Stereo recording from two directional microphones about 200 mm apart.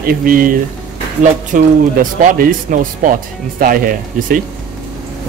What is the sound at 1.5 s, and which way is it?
Speech, 40° right (ahead or behind).